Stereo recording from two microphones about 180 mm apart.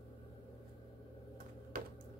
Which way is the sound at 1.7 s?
55° right (ahead or behind).